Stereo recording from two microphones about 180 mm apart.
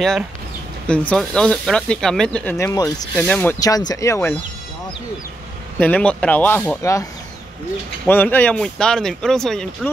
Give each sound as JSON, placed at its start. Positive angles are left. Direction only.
{"t": 0.8, "sound": "speech", "side_deg": 5}
{"t": 3.3, "sound": "speech", "side_deg": 10}
{"t": 3.5, "sound": "speech", "side_deg": 20}
{"t": 5.8, "sound": "speech", "side_deg": 5}
{"t": 8.1, "sound": "speech", "side_deg": 10}